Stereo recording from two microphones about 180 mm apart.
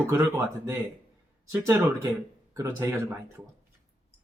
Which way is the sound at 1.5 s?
10° right (ahead or behind).